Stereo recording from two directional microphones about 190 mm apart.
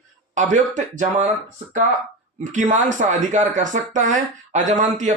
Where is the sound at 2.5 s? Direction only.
40° right (ahead or behind).